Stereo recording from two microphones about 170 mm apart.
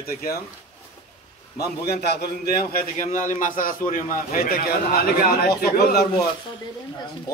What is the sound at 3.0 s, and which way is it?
A man's voice, 45° left (ahead or behind).